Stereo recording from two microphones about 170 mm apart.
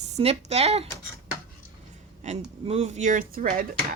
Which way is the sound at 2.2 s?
45° right (ahead or behind).